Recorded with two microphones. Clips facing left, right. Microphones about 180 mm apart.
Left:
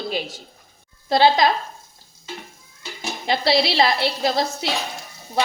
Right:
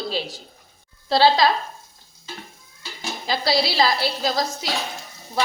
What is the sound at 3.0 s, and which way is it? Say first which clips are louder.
A woman's voice: left 3 dB; 25° left (ahead or behind).